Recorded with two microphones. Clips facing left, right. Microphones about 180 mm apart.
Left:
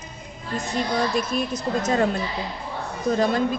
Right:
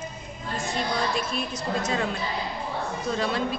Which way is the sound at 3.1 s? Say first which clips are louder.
Left 6 dB; 45° left (ahead or behind).